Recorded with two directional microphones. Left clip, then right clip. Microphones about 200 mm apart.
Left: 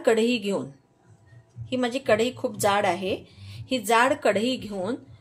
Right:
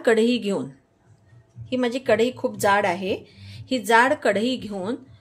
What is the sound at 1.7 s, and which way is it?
Speech, 15° right (ahead or behind).